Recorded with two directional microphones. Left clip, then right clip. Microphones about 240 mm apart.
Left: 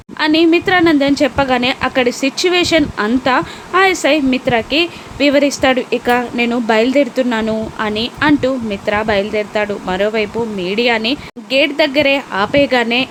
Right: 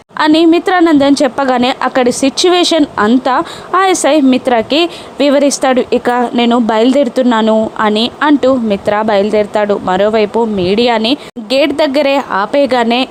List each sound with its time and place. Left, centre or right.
0.2 s a woman's voice: centre